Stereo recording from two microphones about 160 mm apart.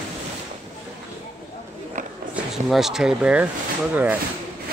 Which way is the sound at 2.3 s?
Centre (ahead or behind).